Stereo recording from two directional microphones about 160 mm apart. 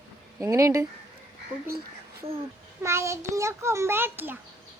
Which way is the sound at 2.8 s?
15° right (ahead or behind).